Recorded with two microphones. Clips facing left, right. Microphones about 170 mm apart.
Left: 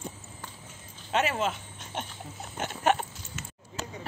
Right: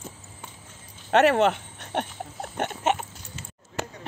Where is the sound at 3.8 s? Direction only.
65° right (ahead or behind).